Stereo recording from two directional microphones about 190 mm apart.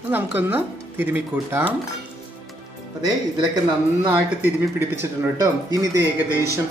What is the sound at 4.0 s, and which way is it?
Speech, 10° right (ahead or behind).